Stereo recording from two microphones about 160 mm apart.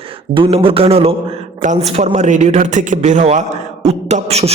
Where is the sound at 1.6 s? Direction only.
45° right (ahead or behind).